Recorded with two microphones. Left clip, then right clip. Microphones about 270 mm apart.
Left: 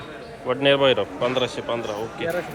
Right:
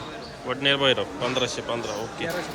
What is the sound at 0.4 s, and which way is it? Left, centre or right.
A man's voice, centre.